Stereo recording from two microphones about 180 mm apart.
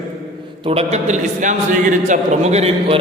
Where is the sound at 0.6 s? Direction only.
35° right (ahead or behind).